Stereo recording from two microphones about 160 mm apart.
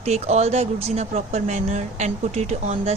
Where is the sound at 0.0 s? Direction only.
45° right (ahead or behind).